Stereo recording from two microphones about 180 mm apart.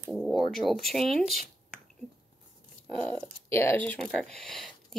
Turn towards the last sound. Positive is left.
turn(degrees=0)  # may be behind; listen again after turning